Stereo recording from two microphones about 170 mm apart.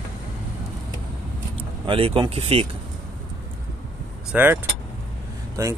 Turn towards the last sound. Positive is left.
turn(degrees=-15)  # may be behind; listen again after turning